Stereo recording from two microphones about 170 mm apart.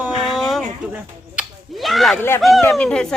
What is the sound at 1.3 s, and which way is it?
Finger snapping, centre (ahead or behind).